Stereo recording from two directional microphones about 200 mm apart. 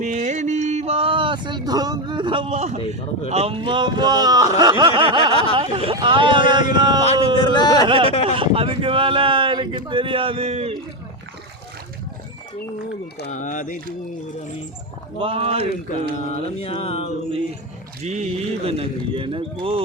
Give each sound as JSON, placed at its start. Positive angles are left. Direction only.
{"t": 0.0, "sound": "a sound", "side_deg": -40}
{"t": 3.2, "sound": "speech", "side_deg": -30}
{"t": 7.0, "sound": "speech", "side_deg": 30}
{"t": 8.1, "sound": "mantra", "side_deg": 30}
{"t": 8.4, "sound": "speech", "side_deg": -25}
{"t": 13.3, "sound": "mantra", "side_deg": 40}
{"t": 15.2, "sound": "speech", "side_deg": -30}
{"t": 16.1, "sound": "mantra", "side_deg": 30}
{"t": 18.0, "sound": "speech", "side_deg": -35}